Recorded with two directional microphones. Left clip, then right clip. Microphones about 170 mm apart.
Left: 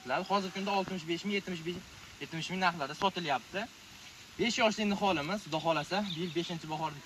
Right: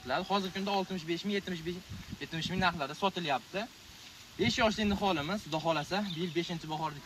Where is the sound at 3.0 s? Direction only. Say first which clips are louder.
Even; 20° right (ahead or behind).